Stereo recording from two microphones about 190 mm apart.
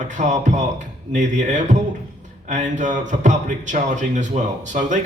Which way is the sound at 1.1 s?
40° right (ahead or behind).